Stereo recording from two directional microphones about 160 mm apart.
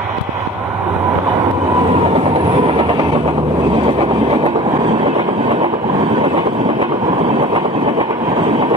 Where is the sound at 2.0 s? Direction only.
35° right (ahead or behind).